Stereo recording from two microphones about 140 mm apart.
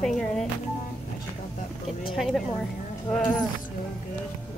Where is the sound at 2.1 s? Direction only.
Centre (ahead or behind).